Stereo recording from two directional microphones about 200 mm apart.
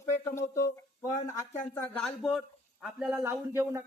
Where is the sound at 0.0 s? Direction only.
15° left (ahead or behind).